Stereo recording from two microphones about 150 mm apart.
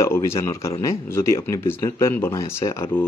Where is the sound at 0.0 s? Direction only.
20° left (ahead or behind).